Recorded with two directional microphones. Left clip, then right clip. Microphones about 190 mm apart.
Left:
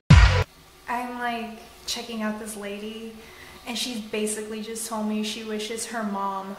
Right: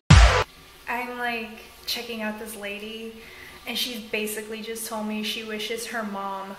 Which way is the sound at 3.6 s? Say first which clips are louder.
Right 2 dB; 25° left (ahead or behind).